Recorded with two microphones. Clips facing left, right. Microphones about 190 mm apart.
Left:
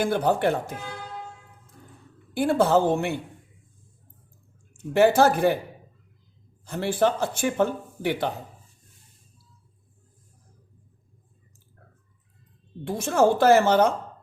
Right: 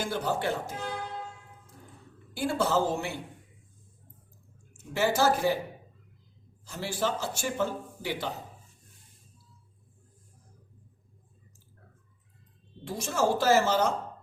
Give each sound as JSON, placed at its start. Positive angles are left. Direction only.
{"t": 0.0, "sound": "a man's voice", "side_deg": 60}
{"t": 2.3, "sound": "a man's voice", "side_deg": 55}
{"t": 4.9, "sound": "a man's voice", "side_deg": 55}
{"t": 6.7, "sound": "a man's voice", "side_deg": 55}
{"t": 12.8, "sound": "a man's voice", "side_deg": 55}